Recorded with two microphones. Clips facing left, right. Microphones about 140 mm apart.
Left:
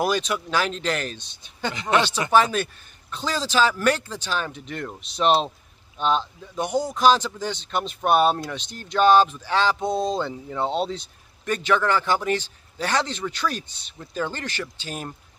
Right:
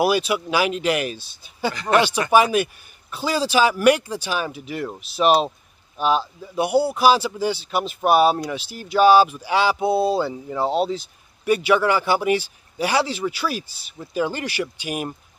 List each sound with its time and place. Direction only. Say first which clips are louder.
0.0 s speech: right 4 dB; 10° right (ahead or behind)
1.7 s speech: right 3 dB; 20° left (ahead or behind)
2.3 s speech: right 3 dB; 10° right (ahead or behind)